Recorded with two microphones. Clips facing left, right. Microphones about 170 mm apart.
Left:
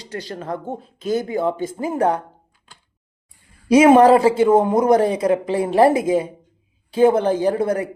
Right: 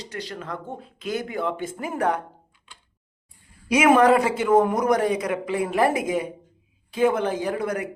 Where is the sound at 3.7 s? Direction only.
30° left (ahead or behind).